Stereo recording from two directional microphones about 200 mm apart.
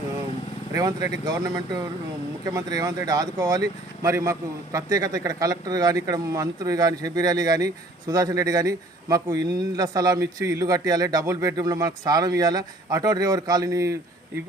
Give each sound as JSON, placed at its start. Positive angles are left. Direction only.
{"t": 0.7, "sound": "speech", "side_deg": -20}